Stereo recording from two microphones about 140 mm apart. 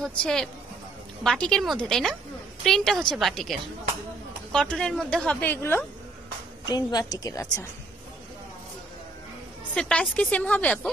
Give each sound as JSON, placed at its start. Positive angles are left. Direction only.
{"t": 0.2, "sound": "a woman's voice", "side_deg": 5}
{"t": 6.7, "sound": "a woman's voice", "side_deg": 30}
{"t": 9.8, "sound": "a woman's voice", "side_deg": 5}